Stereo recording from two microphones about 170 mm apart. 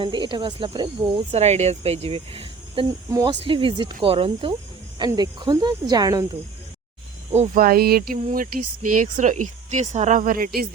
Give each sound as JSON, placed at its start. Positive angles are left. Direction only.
{"t": 0.0, "sound": "speech", "side_deg": -25}
{"t": 1.3, "sound": "speech", "side_deg": -40}
{"t": 3.1, "sound": "speech", "side_deg": -20}
{"t": 3.4, "sound": "speech", "side_deg": -30}
{"t": 7.3, "sound": "speech", "side_deg": -45}
{"t": 7.6, "sound": "speech", "side_deg": -60}